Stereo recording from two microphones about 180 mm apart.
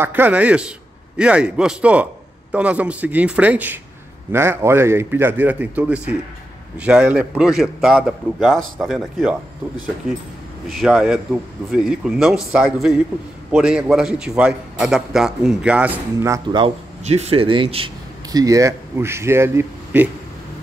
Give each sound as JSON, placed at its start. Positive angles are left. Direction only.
{"t": 0.0, "sound": "a man's voice", "side_deg": -10}
{"t": 10.7, "sound": "a man's voice", "side_deg": 0}
{"t": 17.0, "sound": "speech", "side_deg": -35}
{"t": 18.3, "sound": "a man's voice", "side_deg": -20}